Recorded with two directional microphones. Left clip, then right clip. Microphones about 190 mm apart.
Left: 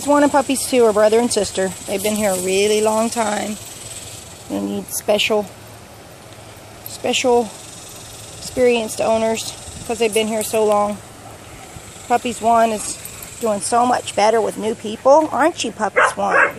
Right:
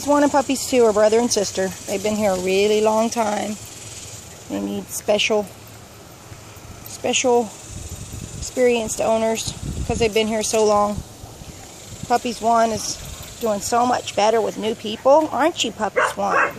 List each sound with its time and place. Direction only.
0.0 s speech: centre (ahead or behind)
7.0 s speech: centre (ahead or behind)
8.5 s speech: centre (ahead or behind)
12.1 s speech: 5° right (ahead or behind)